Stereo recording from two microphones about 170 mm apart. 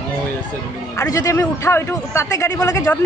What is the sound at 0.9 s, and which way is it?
A man's voice, 20° left (ahead or behind).